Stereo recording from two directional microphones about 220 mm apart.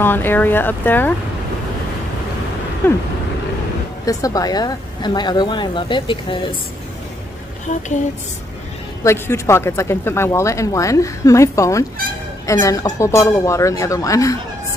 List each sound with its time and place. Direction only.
0.0 s speech: 10° left (ahead or behind)
2.8 s speech: 10° left (ahead or behind)
4.0 s speech: 15° left (ahead or behind)
9.0 s speech: 10° left (ahead or behind)